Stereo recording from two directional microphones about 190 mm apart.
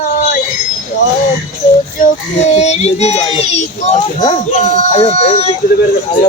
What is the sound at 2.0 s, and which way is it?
Speech, 35° left (ahead or behind).